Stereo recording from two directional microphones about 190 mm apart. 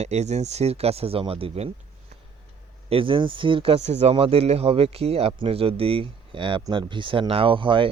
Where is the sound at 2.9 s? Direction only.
25° right (ahead or behind).